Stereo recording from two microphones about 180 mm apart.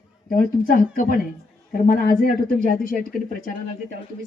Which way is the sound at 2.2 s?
55° left (ahead or behind).